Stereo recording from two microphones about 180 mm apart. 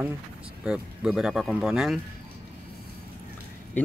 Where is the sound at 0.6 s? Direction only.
5° right (ahead or behind).